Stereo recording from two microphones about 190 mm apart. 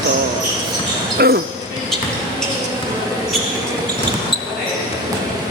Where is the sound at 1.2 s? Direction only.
55° right (ahead or behind).